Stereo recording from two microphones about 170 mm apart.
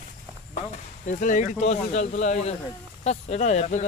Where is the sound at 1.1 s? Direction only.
50° left (ahead or behind).